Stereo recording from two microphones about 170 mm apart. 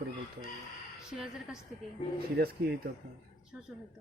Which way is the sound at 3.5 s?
10° right (ahead or behind).